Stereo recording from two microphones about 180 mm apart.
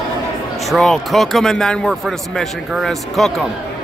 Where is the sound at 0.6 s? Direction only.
Centre (ahead or behind).